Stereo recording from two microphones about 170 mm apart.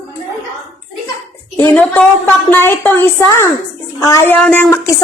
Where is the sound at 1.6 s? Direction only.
10° left (ahead or behind).